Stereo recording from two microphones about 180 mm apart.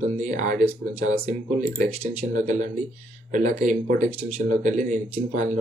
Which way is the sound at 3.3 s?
45° right (ahead or behind).